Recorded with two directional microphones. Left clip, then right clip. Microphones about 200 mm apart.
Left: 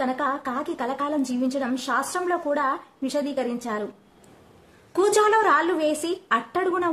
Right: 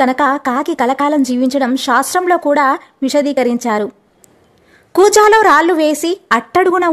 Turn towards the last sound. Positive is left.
turn(degrees=-45)  # may be behind; listen again after turning